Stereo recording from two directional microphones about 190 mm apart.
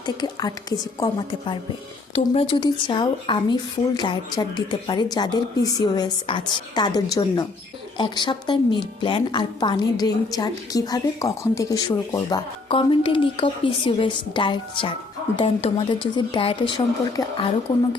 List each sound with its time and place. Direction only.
0.0 s speech: 20° left (ahead or behind)